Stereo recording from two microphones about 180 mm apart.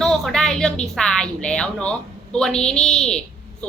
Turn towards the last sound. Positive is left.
turn(degrees=5)  # may be behind; listen again after turning